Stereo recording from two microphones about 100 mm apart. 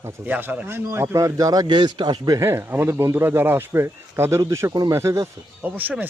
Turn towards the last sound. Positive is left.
turn(degrees=-15)  # may be behind; listen again after turning